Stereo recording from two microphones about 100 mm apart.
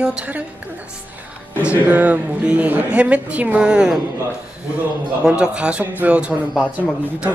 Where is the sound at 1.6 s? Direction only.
15° right (ahead or behind).